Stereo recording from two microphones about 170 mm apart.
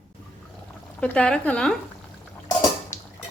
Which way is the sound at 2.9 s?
15° left (ahead or behind).